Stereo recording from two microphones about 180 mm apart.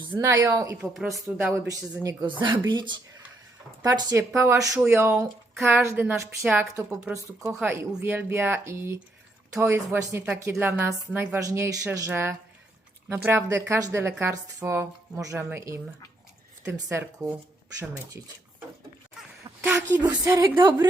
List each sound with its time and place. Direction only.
0.1 s speech: 20° right (ahead or behind)
7.4 s speech: 5° right (ahead or behind)
19.6 s speech: 10° right (ahead or behind)
20.0 s speech: 20° right (ahead or behind)